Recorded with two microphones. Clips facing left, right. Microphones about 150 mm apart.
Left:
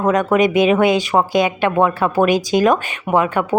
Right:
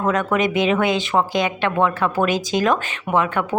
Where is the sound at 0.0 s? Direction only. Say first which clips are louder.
Left 5 dB; 20° left (ahead or behind).